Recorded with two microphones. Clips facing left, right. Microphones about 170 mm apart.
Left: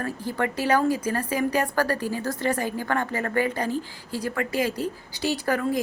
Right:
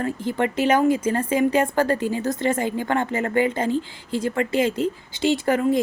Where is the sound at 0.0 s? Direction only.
20° right (ahead or behind).